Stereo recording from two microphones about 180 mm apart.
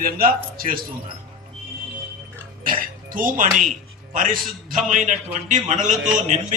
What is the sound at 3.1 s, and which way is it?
A man's voice, 50° right (ahead or behind).